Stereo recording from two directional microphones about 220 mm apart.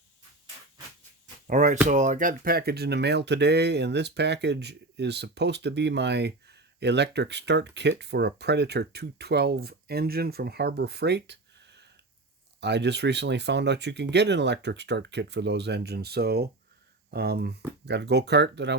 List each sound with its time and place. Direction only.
1.5 s speech: 35° right (ahead or behind); by 18.8 s 50° right (ahead or behind)